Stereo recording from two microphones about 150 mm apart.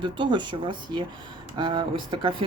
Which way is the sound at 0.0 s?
30° right (ahead or behind).